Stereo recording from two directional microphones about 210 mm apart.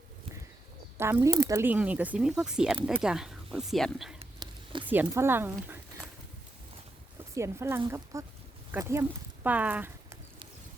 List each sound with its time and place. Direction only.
0.9 s speech: 10° right (ahead or behind)
4.2 s a sound: 25° right (ahead or behind)
4.9 s speech: 10° right (ahead or behind)
7.3 s speech: 15° right (ahead or behind)